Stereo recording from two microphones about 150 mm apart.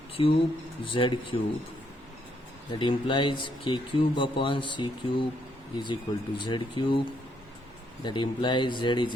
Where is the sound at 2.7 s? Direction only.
35° left (ahead or behind).